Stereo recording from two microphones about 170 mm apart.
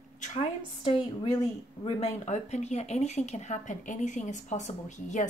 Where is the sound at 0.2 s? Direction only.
40° left (ahead or behind).